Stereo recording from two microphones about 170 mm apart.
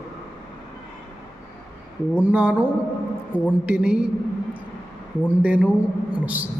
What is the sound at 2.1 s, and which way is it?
A man's voice, 10° right (ahead or behind).